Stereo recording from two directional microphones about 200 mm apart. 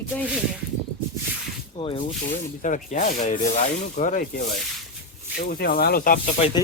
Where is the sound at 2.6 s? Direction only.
40° left (ahead or behind).